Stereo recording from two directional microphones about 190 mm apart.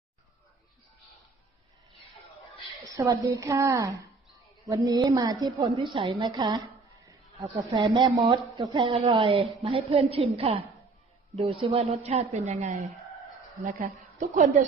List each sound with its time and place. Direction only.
2.8 s a woman's voice: 20° right (ahead or behind)
6.2 s a sound: 20° right (ahead or behind)
7.7 s a woman's voice: 25° right (ahead or behind)
13.6 s a woman's voice: 45° right (ahead or behind)